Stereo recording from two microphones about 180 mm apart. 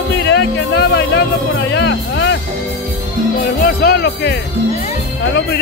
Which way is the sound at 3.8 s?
65° left (ahead or behind).